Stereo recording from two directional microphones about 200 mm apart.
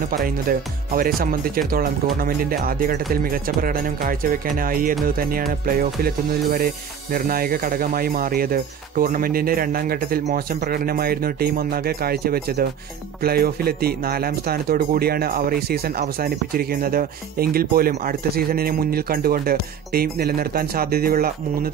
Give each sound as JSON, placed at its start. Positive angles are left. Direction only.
{"t": 0.1, "sound": "speech", "side_deg": -45}